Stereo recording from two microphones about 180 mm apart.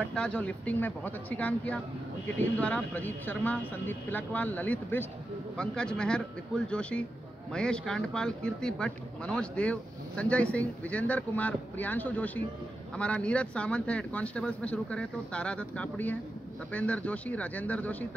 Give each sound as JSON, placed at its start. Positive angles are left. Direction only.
{"t": 0.0, "sound": "a man's voice", "side_deg": 5}